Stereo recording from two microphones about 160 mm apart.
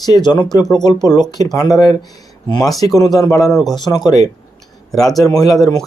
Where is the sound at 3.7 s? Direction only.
25° left (ahead or behind).